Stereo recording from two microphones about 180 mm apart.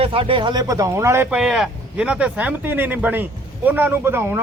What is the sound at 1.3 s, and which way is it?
Speech, centre (ahead or behind).